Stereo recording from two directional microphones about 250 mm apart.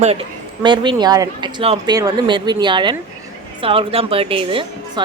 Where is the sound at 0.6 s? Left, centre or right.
Centre.